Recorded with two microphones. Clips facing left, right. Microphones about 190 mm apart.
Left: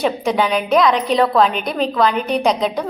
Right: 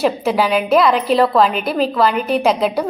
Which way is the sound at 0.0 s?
5° right (ahead or behind).